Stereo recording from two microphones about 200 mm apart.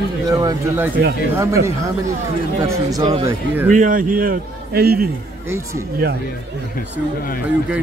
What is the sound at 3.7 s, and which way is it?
A man's voice, 40° right (ahead or behind).